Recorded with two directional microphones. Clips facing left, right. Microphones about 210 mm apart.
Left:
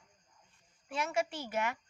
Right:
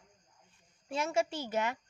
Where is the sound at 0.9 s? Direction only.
25° right (ahead or behind).